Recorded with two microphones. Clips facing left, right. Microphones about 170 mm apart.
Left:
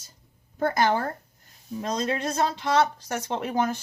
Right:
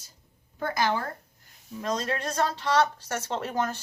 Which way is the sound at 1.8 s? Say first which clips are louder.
Left 2 dB; 15° left (ahead or behind).